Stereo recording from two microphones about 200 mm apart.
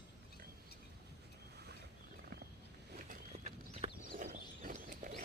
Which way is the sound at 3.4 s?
40° right (ahead or behind).